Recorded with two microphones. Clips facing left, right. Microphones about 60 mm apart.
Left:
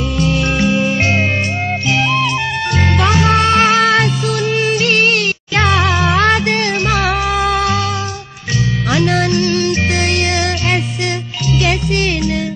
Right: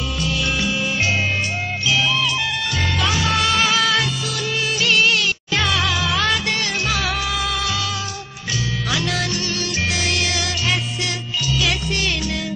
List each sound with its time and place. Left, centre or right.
0.2 s music: left
8.9 s music: left